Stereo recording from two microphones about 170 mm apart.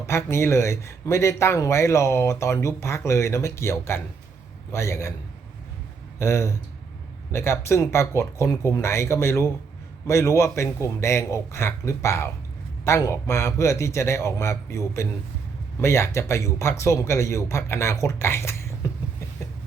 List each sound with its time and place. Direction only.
0.1 s speech: 15° left (ahead or behind)
6.1 s speech: 15° left (ahead or behind)